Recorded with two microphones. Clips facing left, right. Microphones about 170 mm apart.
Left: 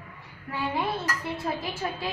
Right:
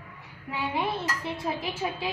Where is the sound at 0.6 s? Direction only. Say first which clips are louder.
Even; 15° right (ahead or behind).